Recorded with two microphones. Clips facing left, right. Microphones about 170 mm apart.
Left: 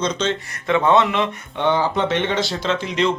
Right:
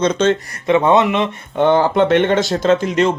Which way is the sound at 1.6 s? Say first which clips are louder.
Right 6 dB; 50° right (ahead or behind).